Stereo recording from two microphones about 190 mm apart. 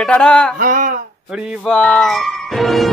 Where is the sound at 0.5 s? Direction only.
45° right (ahead or behind).